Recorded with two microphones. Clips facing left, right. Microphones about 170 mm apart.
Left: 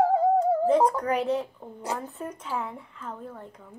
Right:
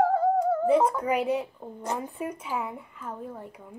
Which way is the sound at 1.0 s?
10° right (ahead or behind).